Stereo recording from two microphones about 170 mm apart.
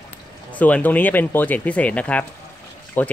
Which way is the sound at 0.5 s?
10° left (ahead or behind).